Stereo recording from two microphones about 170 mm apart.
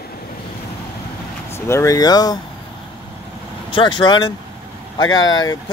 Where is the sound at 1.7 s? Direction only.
20° left (ahead or behind).